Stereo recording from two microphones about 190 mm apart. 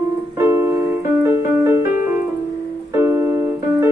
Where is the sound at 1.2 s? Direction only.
15° right (ahead or behind).